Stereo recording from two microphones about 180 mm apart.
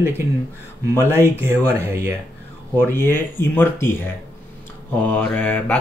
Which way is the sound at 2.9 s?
10° left (ahead or behind).